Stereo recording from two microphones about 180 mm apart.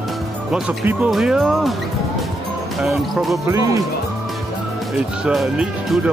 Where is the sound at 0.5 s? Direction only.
5° right (ahead or behind).